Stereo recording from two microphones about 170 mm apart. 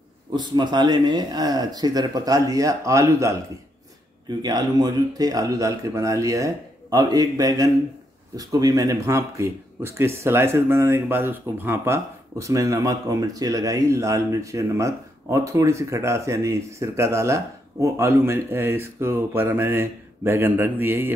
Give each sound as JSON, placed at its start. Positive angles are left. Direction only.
{"t": 0.3, "sound": "speech", "side_deg": -25}